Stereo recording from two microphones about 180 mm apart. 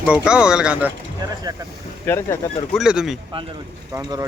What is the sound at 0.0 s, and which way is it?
Speech, 5° right (ahead or behind).